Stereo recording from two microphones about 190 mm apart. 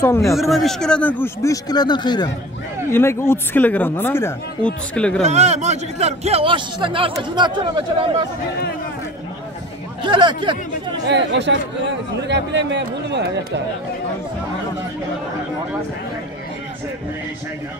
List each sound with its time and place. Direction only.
0.0 s speech: 15° left (ahead or behind)
0.4 s speech: centre (ahead or behind)
5.2 s a man's voice: 35° right (ahead or behind)
10.0 s speech: 25° right (ahead or behind)
11.1 s speech: 65° right (ahead or behind)